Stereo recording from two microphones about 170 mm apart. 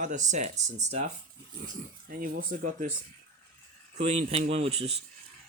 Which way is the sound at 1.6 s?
55° right (ahead or behind).